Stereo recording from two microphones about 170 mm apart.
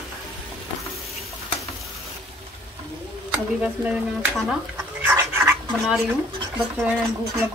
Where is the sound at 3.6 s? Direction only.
10° right (ahead or behind).